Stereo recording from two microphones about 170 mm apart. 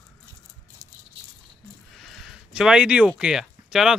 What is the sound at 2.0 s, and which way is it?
Speech, centre (ahead or behind).